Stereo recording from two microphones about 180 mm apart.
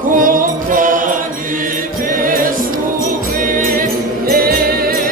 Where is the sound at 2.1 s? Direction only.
50° right (ahead or behind).